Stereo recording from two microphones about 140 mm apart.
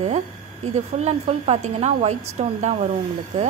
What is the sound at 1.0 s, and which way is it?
A woman's voice, 50° right (ahead or behind).